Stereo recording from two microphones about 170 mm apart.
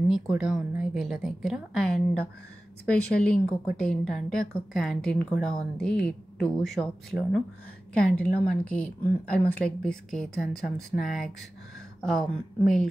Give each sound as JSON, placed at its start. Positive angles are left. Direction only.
{"t": 0.1, "sound": "a woman's voice", "side_deg": -5}